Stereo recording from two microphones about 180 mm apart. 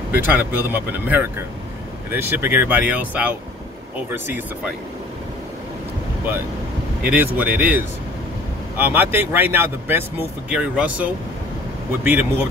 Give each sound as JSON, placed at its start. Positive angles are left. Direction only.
{"t": 0.1, "sound": "speech", "side_deg": -10}
{"t": 7.0, "sound": "speech", "side_deg": -10}